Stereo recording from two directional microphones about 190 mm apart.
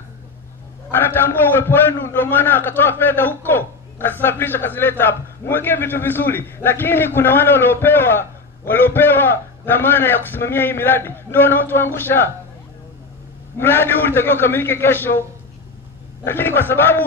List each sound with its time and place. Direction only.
0.9 s a man's voice: 10° left (ahead or behind)
13.6 s a man's voice: 10° left (ahead or behind)
16.3 s a man's voice: 10° left (ahead or behind)